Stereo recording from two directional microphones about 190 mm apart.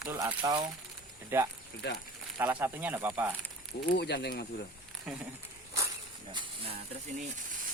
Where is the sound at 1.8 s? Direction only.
65° left (ahead or behind).